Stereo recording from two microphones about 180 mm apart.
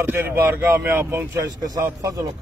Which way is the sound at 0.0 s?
15° right (ahead or behind).